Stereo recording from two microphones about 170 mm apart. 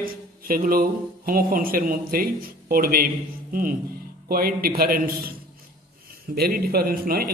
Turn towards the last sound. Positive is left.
turn(degrees=-60)  # may be behind; listen again after turning